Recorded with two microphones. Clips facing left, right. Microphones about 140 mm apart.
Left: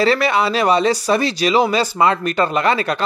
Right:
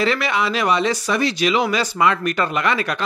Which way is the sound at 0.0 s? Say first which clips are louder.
Left 4 dB; 35° left (ahead or behind).